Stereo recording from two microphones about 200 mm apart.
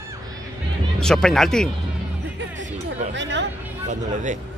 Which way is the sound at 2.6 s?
40° right (ahead or behind).